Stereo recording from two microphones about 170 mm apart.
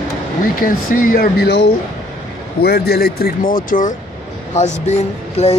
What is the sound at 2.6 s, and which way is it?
Speech, 70° left (ahead or behind).